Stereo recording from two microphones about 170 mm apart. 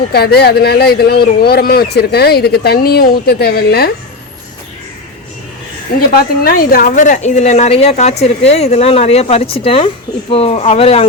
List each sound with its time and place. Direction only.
0.1 s speech: 70° left (ahead or behind)
6.1 s speech: 60° left (ahead or behind); by 11.0 s 35° left (ahead or behind)